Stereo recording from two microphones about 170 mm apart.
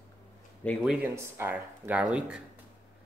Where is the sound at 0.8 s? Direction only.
10° right (ahead or behind).